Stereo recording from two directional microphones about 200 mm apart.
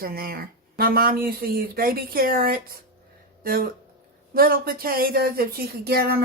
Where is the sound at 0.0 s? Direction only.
45° right (ahead or behind).